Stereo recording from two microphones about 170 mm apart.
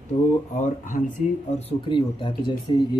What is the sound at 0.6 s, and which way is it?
Speech, 50° left (ahead or behind).